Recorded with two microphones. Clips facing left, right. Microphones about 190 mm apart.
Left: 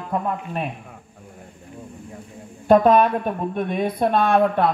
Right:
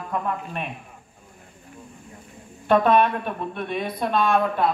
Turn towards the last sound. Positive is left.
turn(degrees=60)  # may be behind; listen again after turning